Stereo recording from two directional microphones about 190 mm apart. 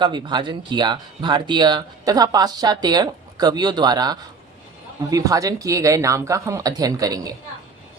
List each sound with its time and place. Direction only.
0.0 s speech: 25° right (ahead or behind)